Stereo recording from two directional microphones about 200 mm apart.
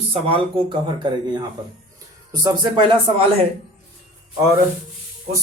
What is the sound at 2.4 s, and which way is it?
Speech, 20° right (ahead or behind).